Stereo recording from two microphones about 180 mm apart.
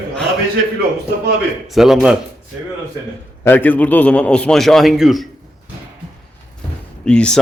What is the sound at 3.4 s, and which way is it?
A man's voice, 10° left (ahead or behind).